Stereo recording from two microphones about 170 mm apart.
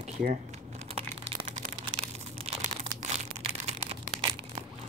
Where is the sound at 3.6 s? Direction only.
35° right (ahead or behind).